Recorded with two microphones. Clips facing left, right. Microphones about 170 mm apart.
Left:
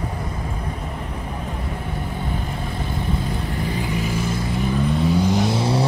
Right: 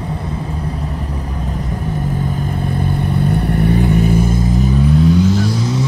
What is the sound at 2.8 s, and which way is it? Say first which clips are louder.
Vehicle: right 7 dB; 60° right (ahead or behind).